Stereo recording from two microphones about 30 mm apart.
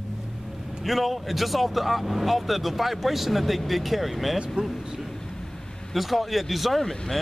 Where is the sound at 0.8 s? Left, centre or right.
Centre.